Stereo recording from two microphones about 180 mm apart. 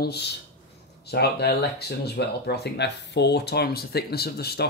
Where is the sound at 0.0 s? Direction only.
65° left (ahead or behind).